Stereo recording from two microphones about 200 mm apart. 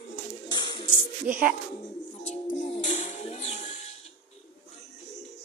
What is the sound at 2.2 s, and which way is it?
Music, 35° left (ahead or behind).